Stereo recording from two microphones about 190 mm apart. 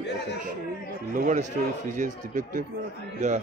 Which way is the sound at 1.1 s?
40° right (ahead or behind).